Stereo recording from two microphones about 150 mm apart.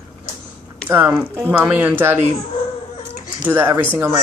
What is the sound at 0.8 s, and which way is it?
A child's voice, 15° right (ahead or behind).